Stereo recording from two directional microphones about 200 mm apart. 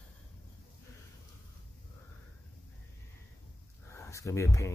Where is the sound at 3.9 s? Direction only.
15° left (ahead or behind).